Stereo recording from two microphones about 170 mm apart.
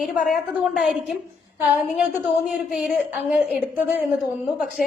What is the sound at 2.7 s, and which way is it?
Speech, 5° right (ahead or behind).